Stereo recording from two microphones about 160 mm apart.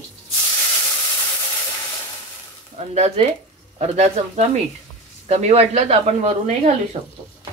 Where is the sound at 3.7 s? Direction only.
40° right (ahead or behind).